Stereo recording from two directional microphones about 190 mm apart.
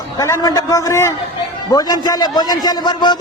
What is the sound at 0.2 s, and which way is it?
A man's voice, 20° left (ahead or behind).